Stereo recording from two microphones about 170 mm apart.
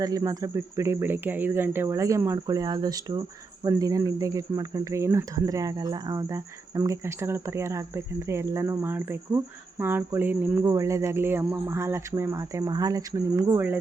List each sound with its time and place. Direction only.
0.0 s speech: 20° right (ahead or behind)